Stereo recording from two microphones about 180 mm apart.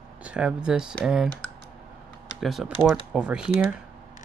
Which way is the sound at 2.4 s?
Centre (ahead or behind).